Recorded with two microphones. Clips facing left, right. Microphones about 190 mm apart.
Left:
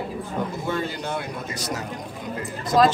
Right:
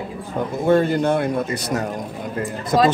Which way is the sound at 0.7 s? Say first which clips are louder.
Right 11 dB; 50° right (ahead or behind).